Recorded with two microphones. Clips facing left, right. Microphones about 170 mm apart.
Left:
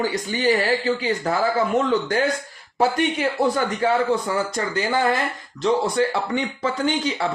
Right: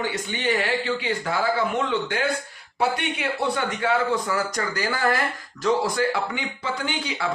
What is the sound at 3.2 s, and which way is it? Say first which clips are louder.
Speech: left 3 dB; 40° left (ahead or behind).